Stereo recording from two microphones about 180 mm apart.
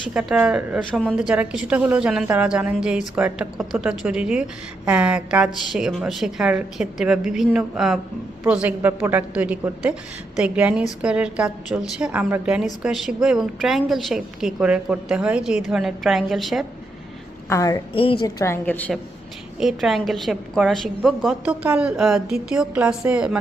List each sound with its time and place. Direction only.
0.1 s a woman's voice: 5° right (ahead or behind)
17.5 s a woman's voice: 20° left (ahead or behind)
17.9 s a woman's voice: 30° left (ahead or behind); by 18.9 s 10° left (ahead or behind)
19.5 s a woman's voice: centre (ahead or behind)